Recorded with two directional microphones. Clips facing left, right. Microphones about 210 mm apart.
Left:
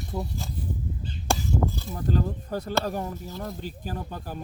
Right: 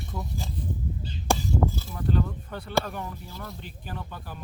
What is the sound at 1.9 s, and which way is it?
Speech, 35° left (ahead or behind).